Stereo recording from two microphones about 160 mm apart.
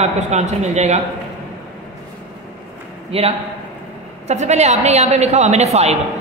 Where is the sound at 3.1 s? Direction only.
40° right (ahead or behind).